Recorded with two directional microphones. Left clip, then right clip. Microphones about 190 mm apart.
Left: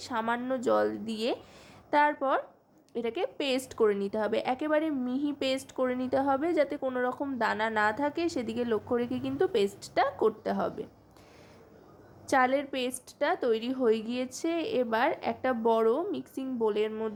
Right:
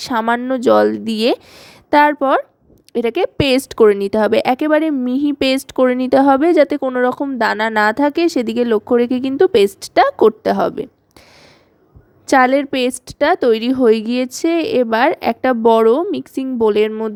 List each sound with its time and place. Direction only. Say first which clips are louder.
0.0 s a woman's voice: right 14 dB; 45° right (ahead or behind)
12.3 s a woman's voice: right 14 dB; 45° right (ahead or behind)